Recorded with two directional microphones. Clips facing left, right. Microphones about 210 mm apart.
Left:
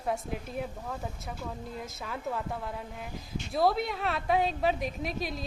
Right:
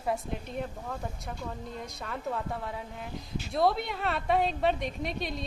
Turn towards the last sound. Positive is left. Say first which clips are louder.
# even
turn(degrees=0)  # may be behind; listen again after turning